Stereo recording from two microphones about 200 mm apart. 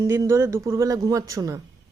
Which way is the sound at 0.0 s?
15° right (ahead or behind).